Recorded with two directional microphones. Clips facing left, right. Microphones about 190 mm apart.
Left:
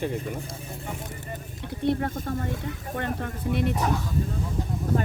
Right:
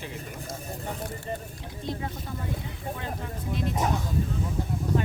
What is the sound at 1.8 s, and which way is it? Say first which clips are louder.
Speech: left 9 dB; 55° left (ahead or behind).